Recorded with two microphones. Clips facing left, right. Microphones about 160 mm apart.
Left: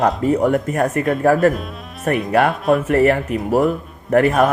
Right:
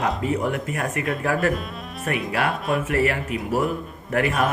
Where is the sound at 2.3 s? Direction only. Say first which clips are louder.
Left 9 dB; 40° left (ahead or behind).